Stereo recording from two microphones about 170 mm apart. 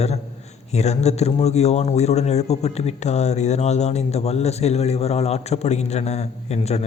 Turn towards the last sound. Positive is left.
turn(degrees=40)  # may be behind; listen again after turning